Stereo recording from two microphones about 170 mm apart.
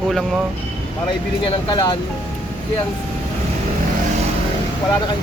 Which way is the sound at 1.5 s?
25° left (ahead or behind).